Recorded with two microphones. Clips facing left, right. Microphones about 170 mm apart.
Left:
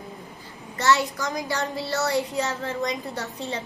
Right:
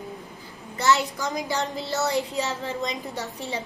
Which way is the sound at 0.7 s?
15° right (ahead or behind).